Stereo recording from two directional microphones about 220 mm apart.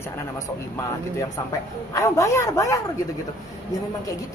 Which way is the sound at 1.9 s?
15° left (ahead or behind).